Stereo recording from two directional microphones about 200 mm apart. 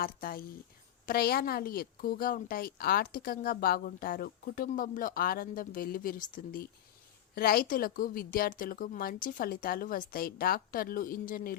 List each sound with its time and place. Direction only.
0.0 s a woman's voice: 45° left (ahead or behind)